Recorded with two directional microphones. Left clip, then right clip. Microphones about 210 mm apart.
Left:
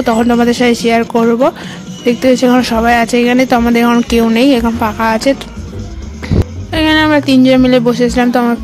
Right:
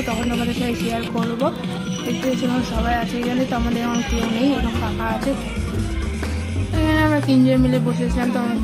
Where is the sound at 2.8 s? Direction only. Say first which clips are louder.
Left 11 dB; 55° left (ahead or behind).